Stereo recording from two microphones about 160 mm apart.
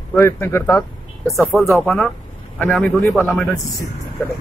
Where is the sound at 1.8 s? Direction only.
5° left (ahead or behind).